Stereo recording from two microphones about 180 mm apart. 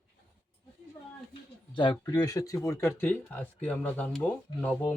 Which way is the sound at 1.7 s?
25° left (ahead or behind).